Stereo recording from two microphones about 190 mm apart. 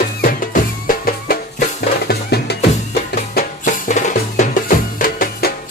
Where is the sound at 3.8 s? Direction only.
40° left (ahead or behind).